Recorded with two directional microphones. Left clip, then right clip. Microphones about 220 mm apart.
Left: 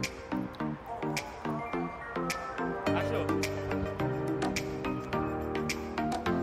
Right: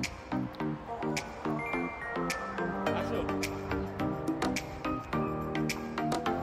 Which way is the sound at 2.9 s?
10° left (ahead or behind).